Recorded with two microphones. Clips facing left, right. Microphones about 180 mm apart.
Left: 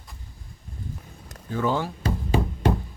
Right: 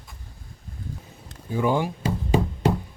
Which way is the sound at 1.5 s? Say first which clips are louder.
Right 2 dB; 15° right (ahead or behind).